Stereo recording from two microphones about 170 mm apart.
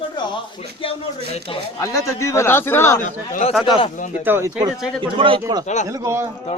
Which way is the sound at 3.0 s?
50° left (ahead or behind).